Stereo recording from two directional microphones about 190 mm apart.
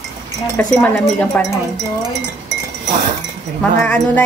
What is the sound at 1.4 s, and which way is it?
Speech, 10° left (ahead or behind).